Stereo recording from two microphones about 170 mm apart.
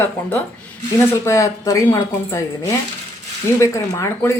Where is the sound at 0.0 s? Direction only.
10° left (ahead or behind).